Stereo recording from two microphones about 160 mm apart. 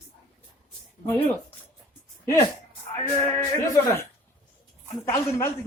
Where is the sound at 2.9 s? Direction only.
20° left (ahead or behind).